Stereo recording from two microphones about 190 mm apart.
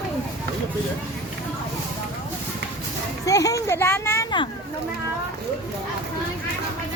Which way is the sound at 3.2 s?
15° left (ahead or behind).